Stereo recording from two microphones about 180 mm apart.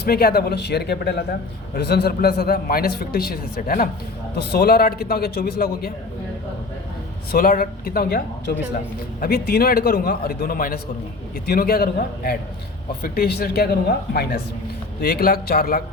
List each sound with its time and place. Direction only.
0.0 s a man's voice: 60° left (ahead or behind)
7.3 s a man's voice: 55° left (ahead or behind)